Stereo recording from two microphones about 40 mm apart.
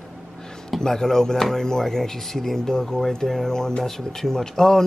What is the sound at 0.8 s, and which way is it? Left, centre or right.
Speech, centre.